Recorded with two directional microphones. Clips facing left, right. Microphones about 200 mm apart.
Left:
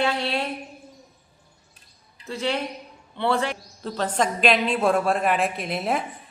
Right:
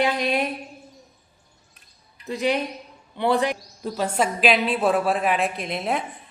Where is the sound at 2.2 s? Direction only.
15° right (ahead or behind).